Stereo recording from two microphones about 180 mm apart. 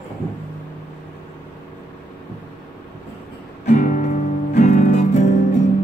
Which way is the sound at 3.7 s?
45° left (ahead or behind).